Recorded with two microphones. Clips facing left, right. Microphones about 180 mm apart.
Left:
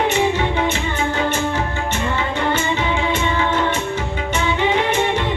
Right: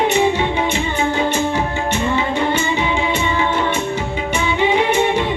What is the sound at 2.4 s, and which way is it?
Music, 15° right (ahead or behind).